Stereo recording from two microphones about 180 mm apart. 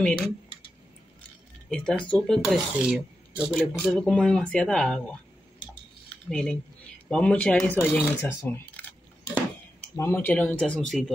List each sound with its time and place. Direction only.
1.7 s speech: 5° left (ahead or behind)
6.3 s speech: 5° left (ahead or behind)
8.4 s a sound: 10° left (ahead or behind)
9.9 s speech: 15° left (ahead or behind)